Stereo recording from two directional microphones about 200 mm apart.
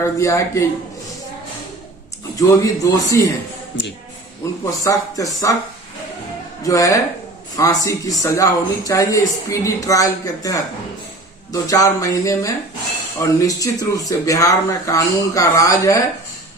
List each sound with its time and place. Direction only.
0.0 s a man's voice: 15° left (ahead or behind)
2.3 s a man's voice: 15° left (ahead or behind)
3.7 s speech: 65° left (ahead or behind)
4.6 s a man's voice: 15° left (ahead or behind)
6.7 s a man's voice: 15° left (ahead or behind)